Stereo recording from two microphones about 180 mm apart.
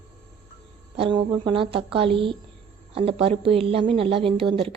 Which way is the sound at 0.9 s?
30° right (ahead or behind).